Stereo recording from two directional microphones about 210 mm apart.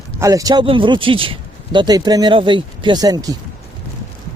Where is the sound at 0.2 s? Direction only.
15° right (ahead or behind).